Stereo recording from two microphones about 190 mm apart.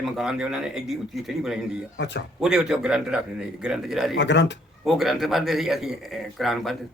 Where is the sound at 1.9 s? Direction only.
65° left (ahead or behind).